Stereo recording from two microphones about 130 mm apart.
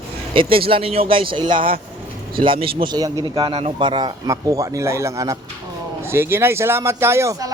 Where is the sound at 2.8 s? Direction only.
30° right (ahead or behind).